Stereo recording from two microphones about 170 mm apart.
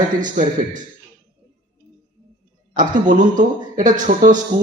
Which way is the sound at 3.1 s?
50° right (ahead or behind).